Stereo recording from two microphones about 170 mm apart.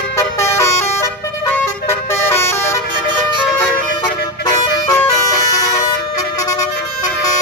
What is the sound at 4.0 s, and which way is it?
Bagpipes, 20° left (ahead or behind).